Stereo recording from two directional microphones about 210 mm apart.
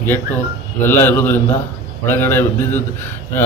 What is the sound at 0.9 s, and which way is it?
Speech, 10° left (ahead or behind).